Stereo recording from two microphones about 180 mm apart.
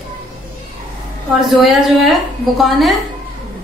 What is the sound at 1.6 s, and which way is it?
Speech, centre (ahead or behind).